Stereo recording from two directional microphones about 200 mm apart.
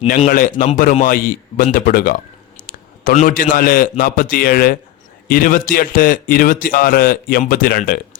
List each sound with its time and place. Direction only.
0.3 s a man's voice: 45° left (ahead or behind)